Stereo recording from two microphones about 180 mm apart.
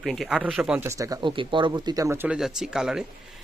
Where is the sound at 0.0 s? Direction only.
Centre (ahead or behind); by 2.1 s 20° right (ahead or behind).